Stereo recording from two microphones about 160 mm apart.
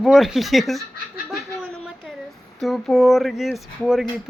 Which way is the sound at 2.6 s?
Centre (ahead or behind).